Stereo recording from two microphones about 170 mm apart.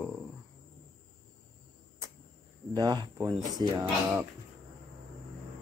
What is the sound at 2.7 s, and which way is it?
Speech, 20° right (ahead or behind).